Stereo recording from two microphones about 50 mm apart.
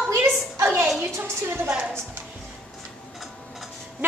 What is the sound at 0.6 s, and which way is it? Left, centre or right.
A woman's voice, right.